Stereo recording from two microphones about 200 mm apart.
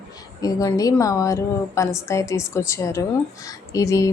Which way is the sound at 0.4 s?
15° left (ahead or behind).